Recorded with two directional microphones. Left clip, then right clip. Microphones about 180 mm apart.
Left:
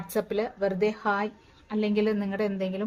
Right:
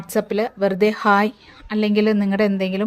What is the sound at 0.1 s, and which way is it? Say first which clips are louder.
A woman's voice: right 7 dB; 35° right (ahead or behind).